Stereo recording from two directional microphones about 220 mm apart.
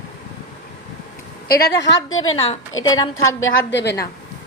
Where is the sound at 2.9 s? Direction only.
15° left (ahead or behind).